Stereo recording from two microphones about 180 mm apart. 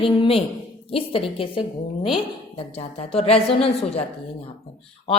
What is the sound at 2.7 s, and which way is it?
A woman's voice, 35° left (ahead or behind).